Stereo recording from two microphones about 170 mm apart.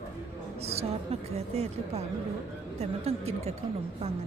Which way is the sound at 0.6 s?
40° right (ahead or behind).